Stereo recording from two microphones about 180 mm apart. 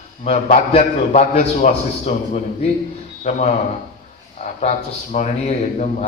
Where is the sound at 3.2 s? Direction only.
40° left (ahead or behind).